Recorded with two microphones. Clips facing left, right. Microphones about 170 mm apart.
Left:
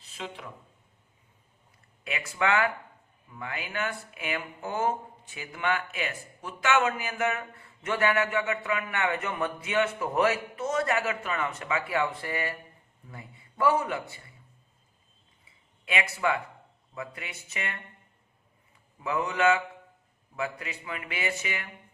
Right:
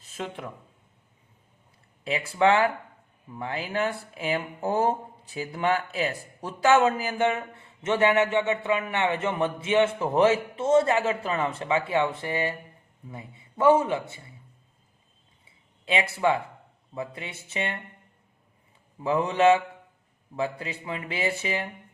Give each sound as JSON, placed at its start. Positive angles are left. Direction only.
{"t": 0.0, "sound": "a sound", "side_deg": -50}
{"t": 2.0, "sound": "speech", "side_deg": -30}
{"t": 15.9, "sound": "speech", "side_deg": -30}
{"t": 19.0, "sound": "speech", "side_deg": -30}